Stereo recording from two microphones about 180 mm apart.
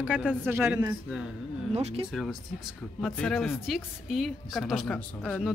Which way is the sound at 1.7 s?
35° right (ahead or behind).